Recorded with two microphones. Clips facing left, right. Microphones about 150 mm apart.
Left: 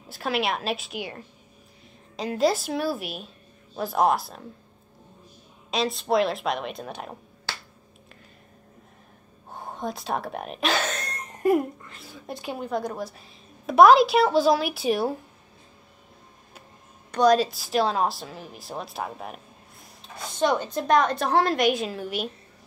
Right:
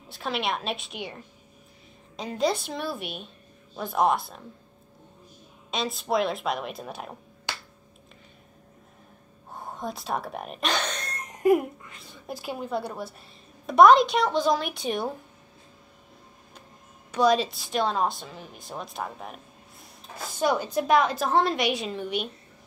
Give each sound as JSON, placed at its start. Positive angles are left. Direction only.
{"t": 0.1, "sound": "a woman's voice", "side_deg": 5}
{"t": 5.7, "sound": "a woman's voice", "side_deg": 0}
{"t": 9.5, "sound": "speech", "side_deg": 0}
{"t": 11.2, "sound": "a sound", "side_deg": -15}
{"t": 12.0, "sound": "a woman's voice", "side_deg": 0}
{"t": 17.1, "sound": "a woman's voice", "side_deg": 0}